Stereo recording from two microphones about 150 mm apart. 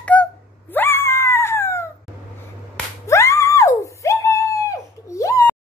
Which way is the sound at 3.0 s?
20° left (ahead or behind).